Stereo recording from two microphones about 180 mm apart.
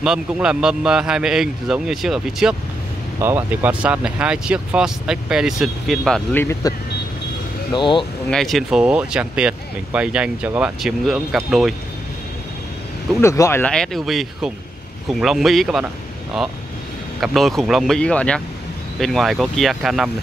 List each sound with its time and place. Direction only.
0.0 s speech: 5° right (ahead or behind)
6.6 s speech: 20° left (ahead or behind)
8.3 s speech: centre (ahead or behind)
13.2 s speech: 15° left (ahead or behind); by 15.9 s centre (ahead or behind)
17.2 s speech: centre (ahead or behind)